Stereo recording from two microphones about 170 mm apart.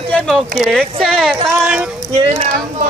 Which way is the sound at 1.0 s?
Centre (ahead or behind).